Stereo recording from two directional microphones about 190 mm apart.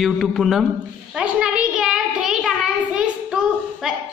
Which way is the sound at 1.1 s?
5° right (ahead or behind).